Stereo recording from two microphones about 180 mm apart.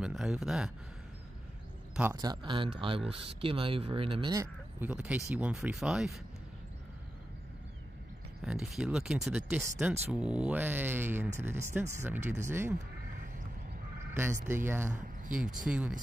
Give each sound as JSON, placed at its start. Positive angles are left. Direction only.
{"t": 0.0, "sound": "speech", "side_deg": -5}
{"t": 2.1, "sound": "speech", "side_deg": -25}
{"t": 8.4, "sound": "speech", "side_deg": -5}
{"t": 14.1, "sound": "speech", "side_deg": -15}
{"t": 15.3, "sound": "speech", "side_deg": -5}